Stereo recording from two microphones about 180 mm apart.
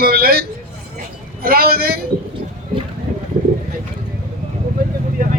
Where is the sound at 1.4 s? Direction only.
60° right (ahead or behind).